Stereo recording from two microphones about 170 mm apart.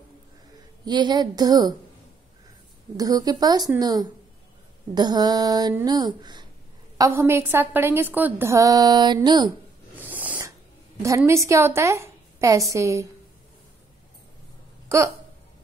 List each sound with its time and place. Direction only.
0.8 s a woman's voice: 25° right (ahead or behind)
3.0 s a woman's voice: 20° right (ahead or behind)
9.9 s snort: 10° right (ahead or behind)
11.0 s a woman's voice: 20° right (ahead or behind)